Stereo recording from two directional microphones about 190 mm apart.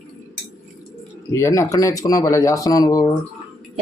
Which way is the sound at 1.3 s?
15° left (ahead or behind).